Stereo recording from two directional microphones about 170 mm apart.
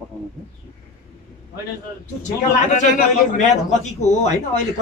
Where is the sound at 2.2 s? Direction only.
45° left (ahead or behind).